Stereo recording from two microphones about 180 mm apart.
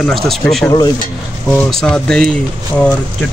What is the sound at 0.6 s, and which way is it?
Speech, 20° left (ahead or behind).